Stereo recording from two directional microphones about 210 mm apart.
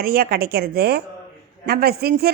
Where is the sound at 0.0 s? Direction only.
45° right (ahead or behind).